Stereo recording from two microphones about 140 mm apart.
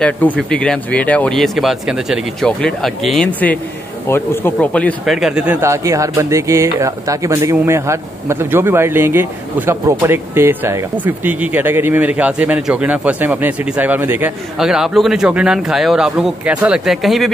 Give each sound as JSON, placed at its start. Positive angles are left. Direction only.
{"t": 0.4, "sound": "speech", "side_deg": 5}
{"t": 5.0, "sound": "a man's voice", "side_deg": 0}
{"t": 14.6, "sound": "speech", "side_deg": -5}